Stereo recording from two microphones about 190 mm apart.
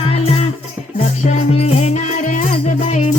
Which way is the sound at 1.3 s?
35° left (ahead or behind).